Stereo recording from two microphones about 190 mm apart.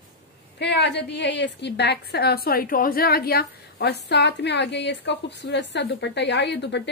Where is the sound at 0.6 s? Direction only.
65° left (ahead or behind).